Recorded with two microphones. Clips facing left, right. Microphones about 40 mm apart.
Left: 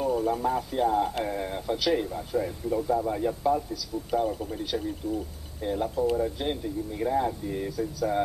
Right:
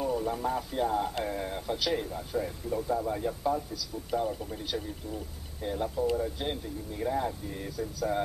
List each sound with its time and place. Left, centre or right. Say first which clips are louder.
0.3 s speech: left 4 dB; centre
5.0 s speech: left 8 dB; left
5.6 s speech: left 3 dB; centre